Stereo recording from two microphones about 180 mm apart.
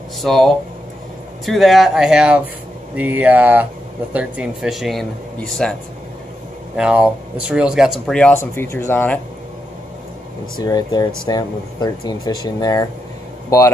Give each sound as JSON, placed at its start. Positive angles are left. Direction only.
{"t": 0.2, "sound": "speech", "side_deg": 0}
{"t": 6.8, "sound": "speech", "side_deg": -5}
{"t": 10.6, "sound": "speech", "side_deg": 20}